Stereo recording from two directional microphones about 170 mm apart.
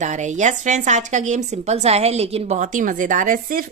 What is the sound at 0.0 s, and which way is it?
A woman's voice, 45° right (ahead or behind).